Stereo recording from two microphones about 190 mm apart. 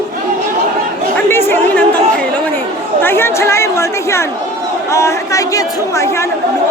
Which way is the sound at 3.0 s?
10° left (ahead or behind).